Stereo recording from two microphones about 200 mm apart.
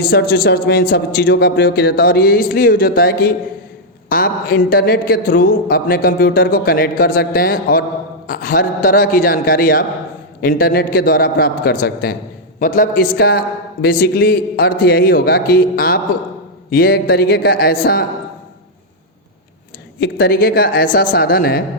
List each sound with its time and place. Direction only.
0.1 s a man's voice: 50° left (ahead or behind)
20.0 s speech: 50° left (ahead or behind)